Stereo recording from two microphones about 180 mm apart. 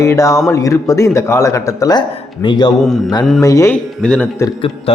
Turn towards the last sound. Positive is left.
turn(degrees=5)  # may be behind; listen again after turning